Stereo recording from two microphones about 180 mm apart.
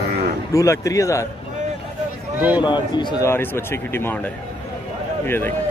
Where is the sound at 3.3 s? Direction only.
15° left (ahead or behind).